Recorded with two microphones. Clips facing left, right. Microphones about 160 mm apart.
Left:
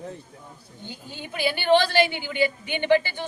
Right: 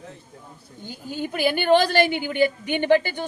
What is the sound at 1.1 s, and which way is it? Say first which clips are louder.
A woman's voice: right 5 dB; 45° right (ahead or behind).